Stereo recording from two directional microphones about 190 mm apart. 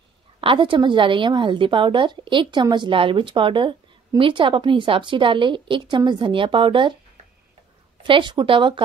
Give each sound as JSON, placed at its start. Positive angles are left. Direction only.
{"t": 0.4, "sound": "a woman's voice", "side_deg": -25}
{"t": 8.0, "sound": "a woman's voice", "side_deg": -25}